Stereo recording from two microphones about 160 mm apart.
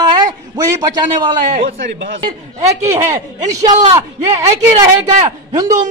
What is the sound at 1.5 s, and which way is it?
Speech, 60° right (ahead or behind).